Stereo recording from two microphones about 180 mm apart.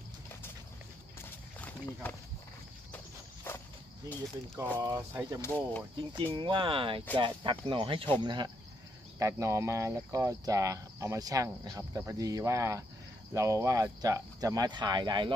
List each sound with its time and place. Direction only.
3.5 s a sound: 10° left (ahead or behind)
4.6 s speech: 15° right (ahead or behind)
5.4 s speech: 10° left (ahead or behind)
5.9 s speech: 25° right (ahead or behind)